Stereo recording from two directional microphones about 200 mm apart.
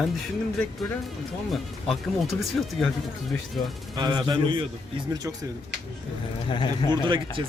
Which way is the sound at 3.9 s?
20° right (ahead or behind).